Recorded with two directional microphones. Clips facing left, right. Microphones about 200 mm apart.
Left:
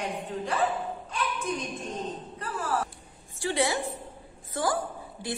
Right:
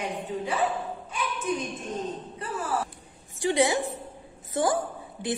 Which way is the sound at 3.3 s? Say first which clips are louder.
Right 4 dB; 15° right (ahead or behind).